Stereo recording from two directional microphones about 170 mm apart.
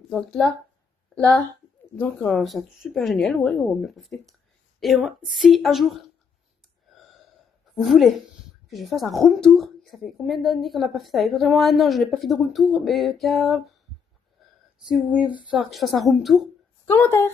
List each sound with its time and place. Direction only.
0.1 s a woman's voice: centre (ahead or behind)
2.0 s a woman's voice: 10° left (ahead or behind)
6.9 s gasp: centre (ahead or behind)
7.7 s a woman's voice: centre (ahead or behind)
14.4 s a sound: centre (ahead or behind)
14.9 s a woman's voice: 5° right (ahead or behind)
16.8 s a woman's voice: 10° left (ahead or behind)